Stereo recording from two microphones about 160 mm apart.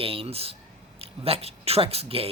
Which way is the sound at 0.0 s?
35° right (ahead or behind).